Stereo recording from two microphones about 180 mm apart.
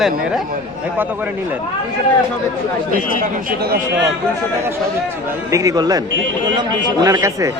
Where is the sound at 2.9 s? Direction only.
55° right (ahead or behind).